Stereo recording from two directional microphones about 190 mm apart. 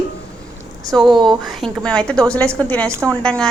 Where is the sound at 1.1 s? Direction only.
25° right (ahead or behind).